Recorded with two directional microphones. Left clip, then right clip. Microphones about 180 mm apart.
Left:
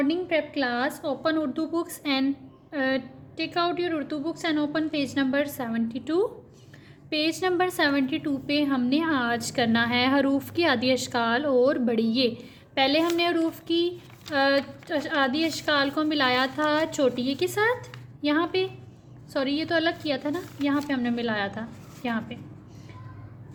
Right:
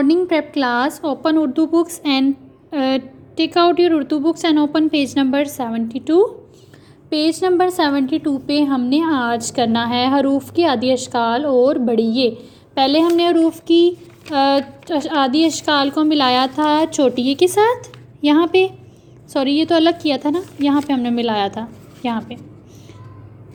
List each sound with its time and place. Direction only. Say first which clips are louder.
0.0 s a woman's voice: right 9 dB; 20° right (ahead or behind)